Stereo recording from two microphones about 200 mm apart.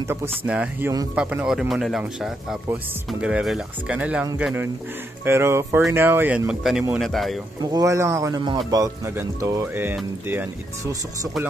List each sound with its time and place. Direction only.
0.3 s speech: 5° right (ahead or behind)
7.7 s speech: 15° right (ahead or behind)